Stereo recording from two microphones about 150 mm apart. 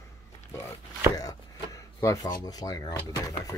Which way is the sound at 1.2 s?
20° left (ahead or behind).